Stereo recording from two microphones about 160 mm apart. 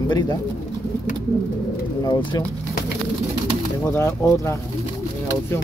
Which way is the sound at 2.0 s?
30° left (ahead or behind).